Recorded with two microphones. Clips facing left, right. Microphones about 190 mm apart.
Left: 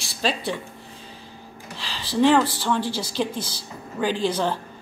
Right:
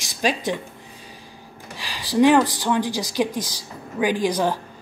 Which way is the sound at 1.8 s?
15° right (ahead or behind).